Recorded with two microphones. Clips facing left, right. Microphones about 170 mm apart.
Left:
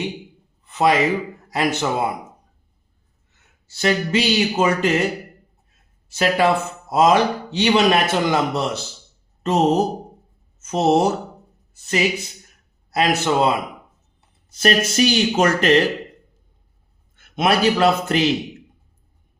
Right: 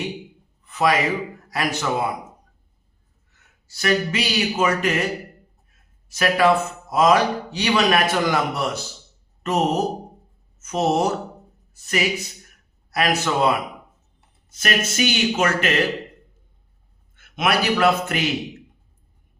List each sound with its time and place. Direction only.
0.7 s a man's voice: 25° left (ahead or behind)
3.7 s a man's voice: 25° left (ahead or behind)
6.1 s a man's voice: 25° left (ahead or behind)
17.2 s a man's voice: 30° left (ahead or behind)